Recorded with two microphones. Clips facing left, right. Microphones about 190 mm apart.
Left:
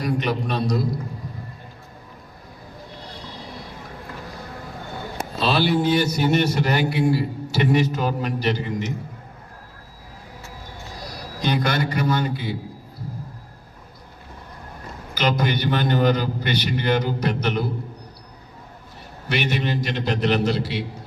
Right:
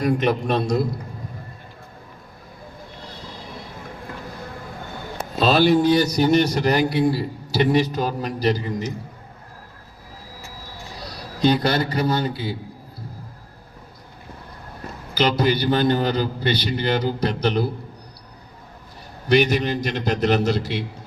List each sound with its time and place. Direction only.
0.0 s a man's voice: 50° right (ahead or behind)
5.4 s a man's voice: 45° right (ahead or behind)
11.1 s a man's voice: 30° right (ahead or behind)
15.1 s a man's voice: 30° right (ahead or behind)
19.3 s a man's voice: 40° right (ahead or behind)